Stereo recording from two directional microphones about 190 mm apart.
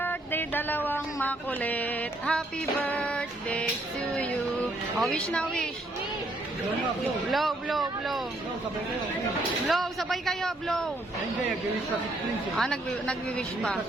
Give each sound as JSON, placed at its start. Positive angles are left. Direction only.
{"t": 0.0, "sound": "a sound", "side_deg": 10}
{"t": 2.8, "sound": "female singing", "side_deg": 5}
{"t": 4.9, "sound": "speech", "side_deg": 5}
{"t": 7.3, "sound": "speech", "side_deg": 0}
{"t": 9.6, "sound": "speech", "side_deg": 0}
{"t": 12.5, "sound": "speech", "side_deg": 5}